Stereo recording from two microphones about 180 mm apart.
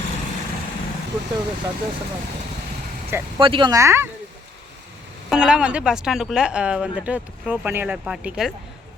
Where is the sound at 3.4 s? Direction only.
25° right (ahead or behind).